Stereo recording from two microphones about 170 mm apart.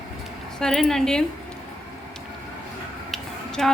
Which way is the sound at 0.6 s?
5° left (ahead or behind).